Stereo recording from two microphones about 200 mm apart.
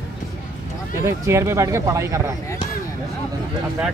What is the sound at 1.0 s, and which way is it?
Speech, 15° right (ahead or behind).